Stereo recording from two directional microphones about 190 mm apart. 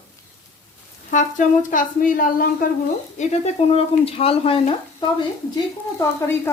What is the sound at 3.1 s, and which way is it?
Speech, 35° left (ahead or behind).